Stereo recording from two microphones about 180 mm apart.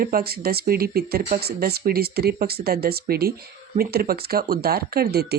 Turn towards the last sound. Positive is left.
turn(degrees=-60)  # may be behind; listen again after turning